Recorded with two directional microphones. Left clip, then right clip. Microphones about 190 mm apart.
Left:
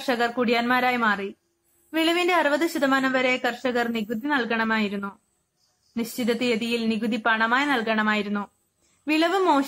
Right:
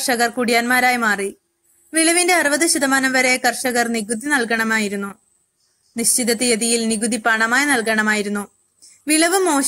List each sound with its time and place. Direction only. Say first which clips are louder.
0.0 s a woman's voice: right 5 dB; 15° right (ahead or behind)